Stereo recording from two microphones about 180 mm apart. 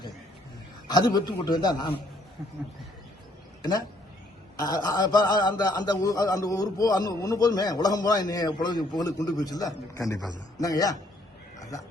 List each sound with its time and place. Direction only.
0.9 s speech: 20° left (ahead or behind)
3.6 s speech: 20° left (ahead or behind)